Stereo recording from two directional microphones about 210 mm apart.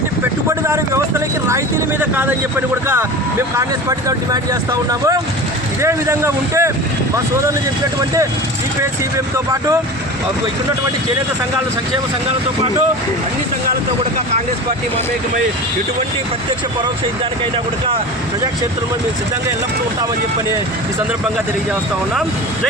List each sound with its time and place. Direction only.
1.5 s speech: 10° right (ahead or behind)